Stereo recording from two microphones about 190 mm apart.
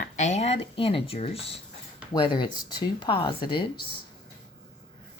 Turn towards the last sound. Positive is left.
turn(degrees=25)  # may be behind; listen again after turning